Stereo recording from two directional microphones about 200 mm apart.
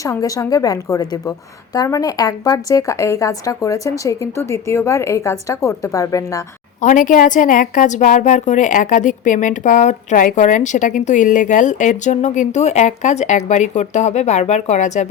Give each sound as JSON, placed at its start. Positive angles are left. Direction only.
{"t": 0.0, "sound": "a woman's voice", "side_deg": 15}
{"t": 6.8, "sound": "a woman's voice", "side_deg": 40}